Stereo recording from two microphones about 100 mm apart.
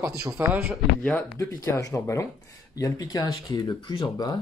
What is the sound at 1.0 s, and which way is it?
Speech, 15° left (ahead or behind).